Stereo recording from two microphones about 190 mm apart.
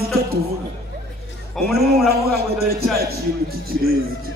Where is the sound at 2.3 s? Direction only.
55° right (ahead or behind).